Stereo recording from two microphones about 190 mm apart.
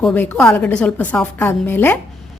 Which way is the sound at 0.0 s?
5° left (ahead or behind).